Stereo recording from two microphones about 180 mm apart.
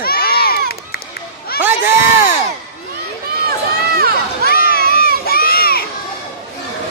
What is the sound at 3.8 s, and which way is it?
Run, 60° right (ahead or behind).